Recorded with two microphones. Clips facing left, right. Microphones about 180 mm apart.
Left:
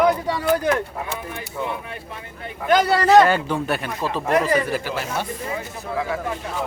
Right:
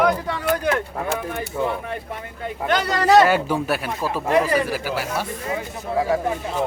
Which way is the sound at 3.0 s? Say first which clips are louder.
Right 3 dB; 5° right (ahead or behind).